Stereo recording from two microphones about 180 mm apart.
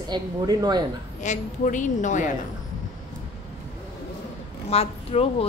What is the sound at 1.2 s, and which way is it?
A woman's voice, 45° left (ahead or behind).